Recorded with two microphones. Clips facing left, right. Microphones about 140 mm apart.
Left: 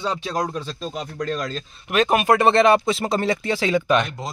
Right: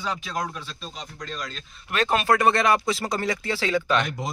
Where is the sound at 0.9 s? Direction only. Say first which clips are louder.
Left 9 dB; 55° left (ahead or behind).